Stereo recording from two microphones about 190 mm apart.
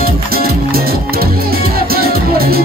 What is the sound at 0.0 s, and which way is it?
Music, 50° right (ahead or behind).